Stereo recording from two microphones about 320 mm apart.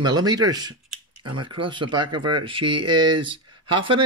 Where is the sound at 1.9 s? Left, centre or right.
Centre.